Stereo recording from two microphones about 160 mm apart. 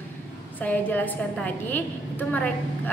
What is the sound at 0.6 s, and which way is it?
A woman's voice, 10° left (ahead or behind).